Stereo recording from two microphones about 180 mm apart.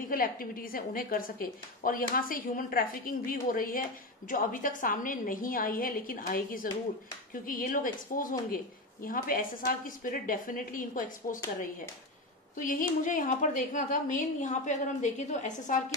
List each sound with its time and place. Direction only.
0.1 s a woman's voice: 50° left (ahead or behind)